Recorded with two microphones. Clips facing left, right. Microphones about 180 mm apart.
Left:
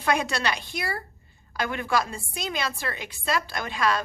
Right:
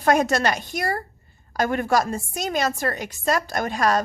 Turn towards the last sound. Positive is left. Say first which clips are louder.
# right 5 dB
turn(degrees=-45)  # may be behind; listen again after turning